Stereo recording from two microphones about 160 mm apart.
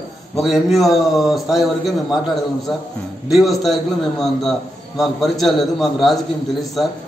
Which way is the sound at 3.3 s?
Centre (ahead or behind).